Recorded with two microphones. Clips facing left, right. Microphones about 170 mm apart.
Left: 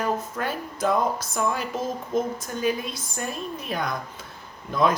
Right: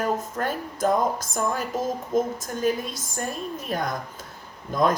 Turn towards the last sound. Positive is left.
turn(degrees=-45)  # may be behind; listen again after turning